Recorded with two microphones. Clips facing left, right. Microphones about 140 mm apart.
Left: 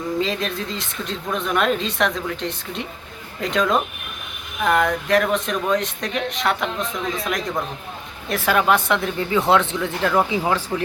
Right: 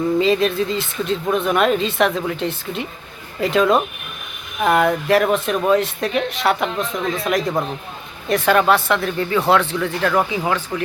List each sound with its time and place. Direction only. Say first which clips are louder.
0.2 s speech: right 7 dB; centre (ahead or behind)
8.7 s speech: right 2 dB; 20° left (ahead or behind)
10.1 s speech: left 1 dB; 5° left (ahead or behind)